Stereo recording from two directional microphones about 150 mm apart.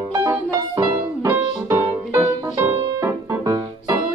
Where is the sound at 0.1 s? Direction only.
20° right (ahead or behind).